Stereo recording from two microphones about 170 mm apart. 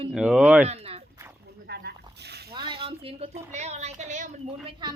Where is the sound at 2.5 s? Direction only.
25° right (ahead or behind); by 4.3 s 45° right (ahead or behind).